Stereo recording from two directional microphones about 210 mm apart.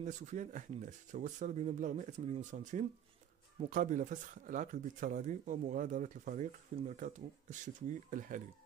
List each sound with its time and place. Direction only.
0.0 s speech: 35° right (ahead or behind)